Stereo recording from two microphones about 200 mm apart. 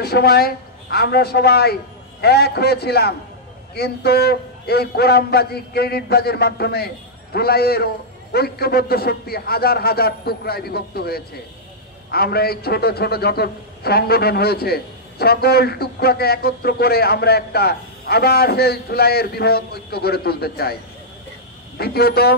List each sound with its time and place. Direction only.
0.0 s a man's voice: 50° left (ahead or behind)
21.7 s a man's voice: 50° left (ahead or behind)